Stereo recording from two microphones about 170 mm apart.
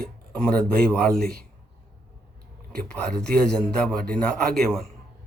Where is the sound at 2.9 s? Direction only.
5° left (ahead or behind).